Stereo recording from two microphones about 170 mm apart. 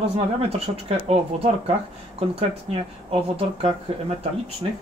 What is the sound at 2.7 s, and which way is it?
Speech, 35° right (ahead or behind).